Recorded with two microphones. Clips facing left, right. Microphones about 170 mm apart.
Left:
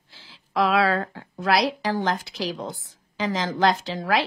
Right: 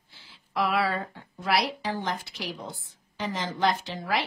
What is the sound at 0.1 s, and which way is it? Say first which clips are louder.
A woman's voice: left 5 dB; 90° left.